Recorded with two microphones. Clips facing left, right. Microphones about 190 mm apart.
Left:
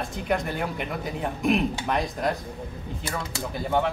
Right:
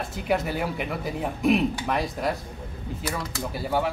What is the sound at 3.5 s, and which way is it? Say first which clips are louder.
Speech: left 1 dB; 5° right (ahead or behind).